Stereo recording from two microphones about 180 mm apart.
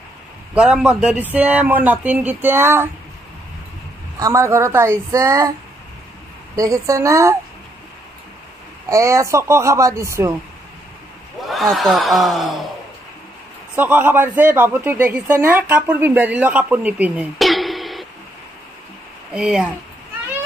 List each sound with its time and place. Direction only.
0.6 s speech: 5° right (ahead or behind)
4.2 s speech: 15° right (ahead or behind)
6.5 s speech: 20° right (ahead or behind)
8.8 s speech: 15° right (ahead or behind)
11.4 s a sound: centre (ahead or behind)
11.7 s speech: centre (ahead or behind)
13.7 s speech: 10° right (ahead or behind)
19.3 s speech: 5° right (ahead or behind)